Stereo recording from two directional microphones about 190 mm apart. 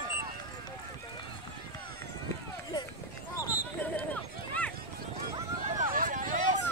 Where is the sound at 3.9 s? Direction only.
5° left (ahead or behind).